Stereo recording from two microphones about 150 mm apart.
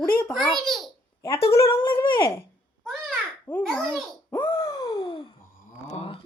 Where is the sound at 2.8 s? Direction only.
5° left (ahead or behind).